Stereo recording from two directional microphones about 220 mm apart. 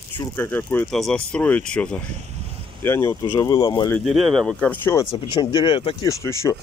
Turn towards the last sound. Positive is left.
turn(degrees=15)  # may be behind; listen again after turning